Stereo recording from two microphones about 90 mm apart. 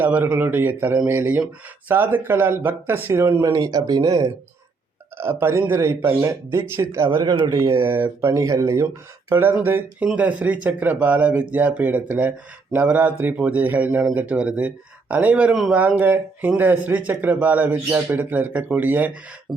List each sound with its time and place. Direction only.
0.0 s speech: 20° right (ahead or behind)
3.4 s speech: 45° right (ahead or behind)
5.1 s speech: 25° right (ahead or behind)
7.2 s speech: 45° right (ahead or behind)
7.9 s speech: 25° right (ahead or behind)
9.3 s speech: 25° right (ahead or behind)
10.2 s speech: 15° right (ahead or behind)
19.5 s beatboxing: centre (ahead or behind)